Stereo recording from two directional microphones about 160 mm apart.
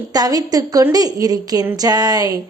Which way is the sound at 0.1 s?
25° right (ahead or behind).